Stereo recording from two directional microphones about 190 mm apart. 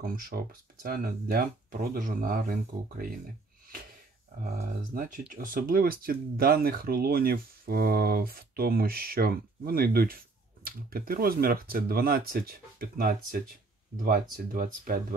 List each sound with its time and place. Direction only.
0.0 s speech: 50° right (ahead or behind)
4.4 s speech: 50° right (ahead or behind)